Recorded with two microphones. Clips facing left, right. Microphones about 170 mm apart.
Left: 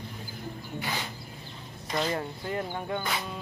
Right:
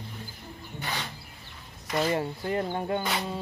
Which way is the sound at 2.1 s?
30° right (ahead or behind).